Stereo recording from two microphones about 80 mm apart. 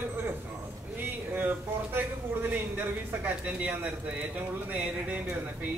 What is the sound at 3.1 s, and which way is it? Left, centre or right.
A man's voice, right.